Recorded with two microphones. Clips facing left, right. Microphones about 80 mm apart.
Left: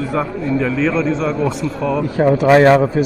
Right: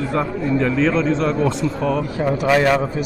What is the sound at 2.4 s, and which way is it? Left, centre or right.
Speech, left.